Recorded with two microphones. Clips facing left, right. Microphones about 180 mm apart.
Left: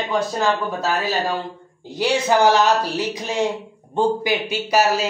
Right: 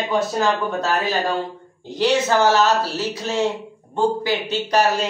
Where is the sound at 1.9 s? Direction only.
10° left (ahead or behind).